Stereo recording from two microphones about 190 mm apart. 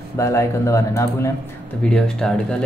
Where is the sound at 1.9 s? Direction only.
5° left (ahead or behind).